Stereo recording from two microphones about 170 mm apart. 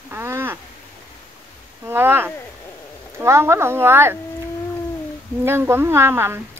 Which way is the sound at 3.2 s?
15° right (ahead or behind).